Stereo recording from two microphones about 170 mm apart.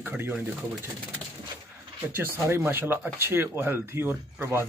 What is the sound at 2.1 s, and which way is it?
Speech, 15° right (ahead or behind).